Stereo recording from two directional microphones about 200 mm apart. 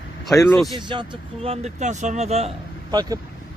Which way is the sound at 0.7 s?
20° right (ahead or behind).